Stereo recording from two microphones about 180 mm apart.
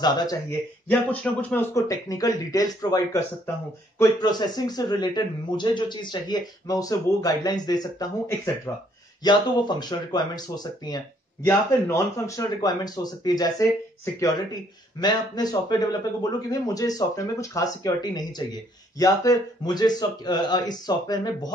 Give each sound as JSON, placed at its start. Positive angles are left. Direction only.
{"t": 0.0, "sound": "a man's voice", "side_deg": 25}
{"t": 0.8, "sound": "a man's voice", "side_deg": 10}
{"t": 15.0, "sound": "a man's voice", "side_deg": 20}